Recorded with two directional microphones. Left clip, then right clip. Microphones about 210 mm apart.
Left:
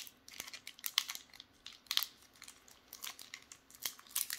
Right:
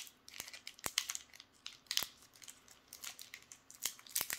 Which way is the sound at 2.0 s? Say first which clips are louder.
Left 3 dB; 5° right (ahead or behind).